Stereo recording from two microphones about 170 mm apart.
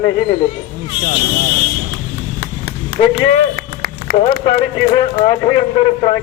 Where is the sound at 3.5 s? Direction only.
60° right (ahead or behind).